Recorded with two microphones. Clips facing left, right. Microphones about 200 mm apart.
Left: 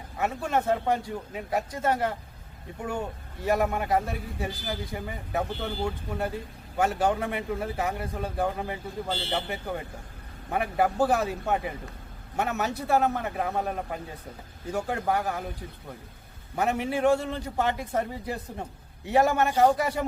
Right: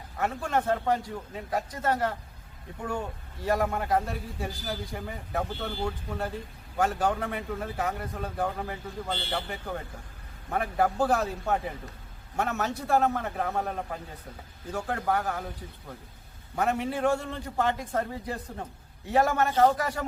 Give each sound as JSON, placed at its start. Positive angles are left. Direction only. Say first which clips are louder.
{"t": 0.2, "sound": "a man's voice", "louder": "left 1 dB", "side_deg": 10}
{"t": 3.6, "sound": "a man's voice", "louder": "left 1 dB", "side_deg": 10}
{"t": 16.6, "sound": "a man's voice", "louder": "left 1 dB", "side_deg": 10}